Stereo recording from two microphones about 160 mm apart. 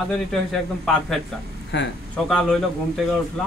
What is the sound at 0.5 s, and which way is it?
Speech, centre (ahead or behind).